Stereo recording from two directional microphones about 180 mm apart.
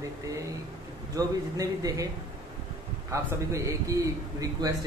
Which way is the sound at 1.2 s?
20° right (ahead or behind).